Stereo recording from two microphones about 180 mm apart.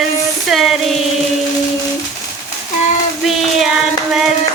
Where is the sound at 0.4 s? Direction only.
Centre (ahead or behind).